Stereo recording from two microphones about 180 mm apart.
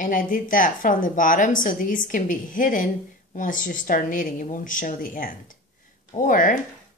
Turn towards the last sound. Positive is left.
turn(degrees=50)  # may be behind; listen again after turning